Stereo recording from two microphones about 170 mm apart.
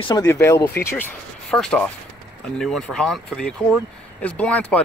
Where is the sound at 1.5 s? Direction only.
5° left (ahead or behind).